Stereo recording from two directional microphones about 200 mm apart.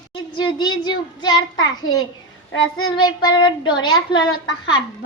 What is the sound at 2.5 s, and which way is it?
Child singing, 90° left.